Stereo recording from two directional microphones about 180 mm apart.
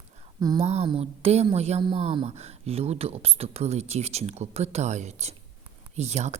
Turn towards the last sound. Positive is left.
turn(degrees=-40)  # may be behind; listen again after turning